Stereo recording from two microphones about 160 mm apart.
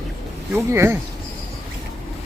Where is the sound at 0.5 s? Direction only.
15° right (ahead or behind).